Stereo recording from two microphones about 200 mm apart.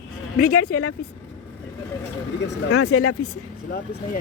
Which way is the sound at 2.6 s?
90° left.